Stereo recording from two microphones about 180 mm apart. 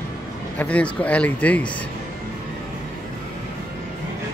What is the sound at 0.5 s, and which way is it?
Speech, 10° left (ahead or behind).